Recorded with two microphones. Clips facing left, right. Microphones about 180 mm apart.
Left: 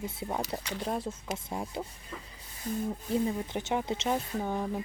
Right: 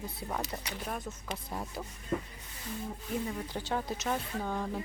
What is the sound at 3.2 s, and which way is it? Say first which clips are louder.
Speech: left 5 dB; 20° left (ahead or behind).